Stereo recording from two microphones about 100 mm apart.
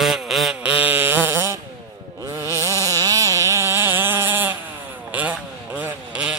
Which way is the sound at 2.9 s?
35° right (ahead or behind).